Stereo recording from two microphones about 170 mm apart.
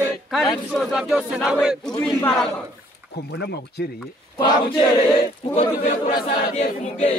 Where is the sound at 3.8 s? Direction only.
70° left (ahead or behind).